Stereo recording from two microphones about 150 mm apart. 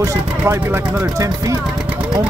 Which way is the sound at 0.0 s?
20° right (ahead or behind).